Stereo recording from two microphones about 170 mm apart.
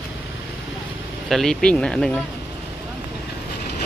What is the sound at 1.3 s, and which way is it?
Speech, centre (ahead or behind).